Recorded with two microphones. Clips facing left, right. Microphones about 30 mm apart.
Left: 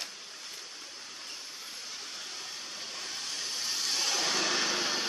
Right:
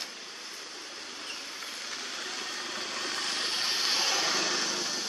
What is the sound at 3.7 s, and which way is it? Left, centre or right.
Vehicle, right.